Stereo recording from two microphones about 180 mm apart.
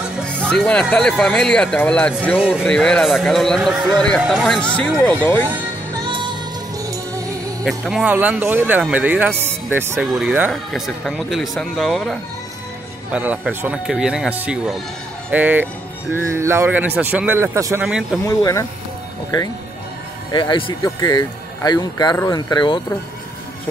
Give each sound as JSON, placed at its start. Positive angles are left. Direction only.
{"t": 0.2, "sound": "speech", "side_deg": 5}
{"t": 2.3, "sound": "speech", "side_deg": -5}
{"t": 2.7, "sound": "speech", "side_deg": 5}
{"t": 6.0, "sound": "music", "side_deg": -25}
{"t": 7.6, "sound": "speech", "side_deg": 0}
{"t": 18.2, "sound": "speech", "side_deg": 15}
{"t": 20.3, "sound": "speech", "side_deg": 25}